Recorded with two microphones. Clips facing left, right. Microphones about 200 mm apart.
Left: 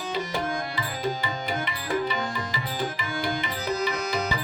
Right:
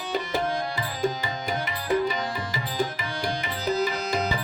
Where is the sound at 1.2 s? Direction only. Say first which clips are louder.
Even; 45° right (ahead or behind).